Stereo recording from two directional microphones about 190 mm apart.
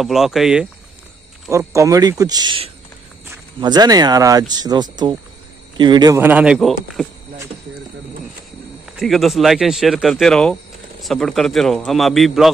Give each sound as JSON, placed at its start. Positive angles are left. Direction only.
{"t": 0.0, "sound": "speech", "side_deg": 0}
{"t": 1.5, "sound": "speech", "side_deg": -15}
{"t": 9.0, "sound": "speech", "side_deg": 0}